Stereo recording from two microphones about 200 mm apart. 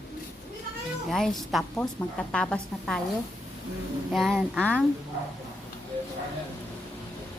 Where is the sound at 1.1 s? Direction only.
Centre (ahead or behind).